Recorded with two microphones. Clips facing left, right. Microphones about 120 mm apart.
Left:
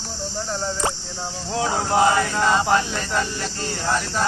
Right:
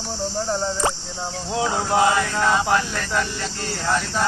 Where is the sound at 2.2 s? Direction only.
5° left (ahead or behind).